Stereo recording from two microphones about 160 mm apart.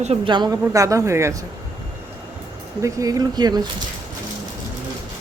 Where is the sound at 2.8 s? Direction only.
20° right (ahead or behind).